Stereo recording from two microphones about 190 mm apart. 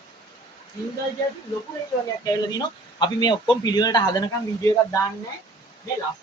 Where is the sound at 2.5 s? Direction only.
25° left (ahead or behind).